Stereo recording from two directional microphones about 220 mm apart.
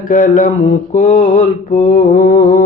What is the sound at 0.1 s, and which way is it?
Mantra, 35° left (ahead or behind).